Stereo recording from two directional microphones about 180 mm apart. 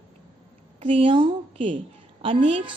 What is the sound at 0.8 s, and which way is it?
A woman's voice, 30° right (ahead or behind).